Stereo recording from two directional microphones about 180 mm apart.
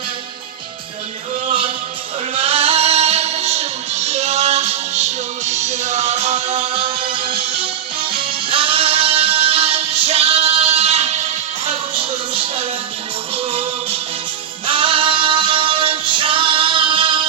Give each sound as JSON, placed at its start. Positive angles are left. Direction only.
{"t": 1.5, "sound": "music", "side_deg": -30}